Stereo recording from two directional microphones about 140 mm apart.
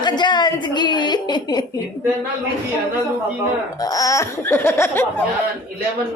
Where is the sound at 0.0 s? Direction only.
30° left (ahead or behind).